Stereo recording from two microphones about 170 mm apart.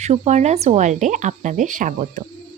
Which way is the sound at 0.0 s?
40° right (ahead or behind).